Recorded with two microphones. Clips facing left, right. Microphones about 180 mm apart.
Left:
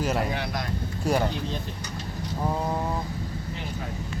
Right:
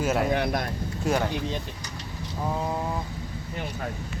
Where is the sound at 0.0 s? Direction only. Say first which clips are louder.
Right 2 dB; 5° right (ahead or behind).